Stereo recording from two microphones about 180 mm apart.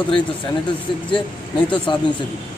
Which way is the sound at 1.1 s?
30° left (ahead or behind).